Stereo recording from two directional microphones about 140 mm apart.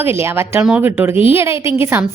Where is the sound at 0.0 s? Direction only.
15° right (ahead or behind).